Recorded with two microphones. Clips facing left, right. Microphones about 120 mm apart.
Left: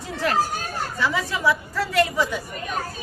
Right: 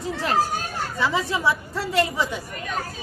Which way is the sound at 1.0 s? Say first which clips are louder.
Even; 25° right (ahead or behind).